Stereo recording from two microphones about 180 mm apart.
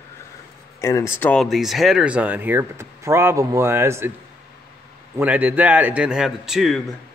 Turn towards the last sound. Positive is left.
turn(degrees=0)  # may be behind; listen again after turning